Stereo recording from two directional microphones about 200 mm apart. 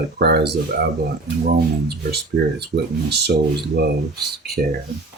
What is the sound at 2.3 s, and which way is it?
Speech, 60° right (ahead or behind).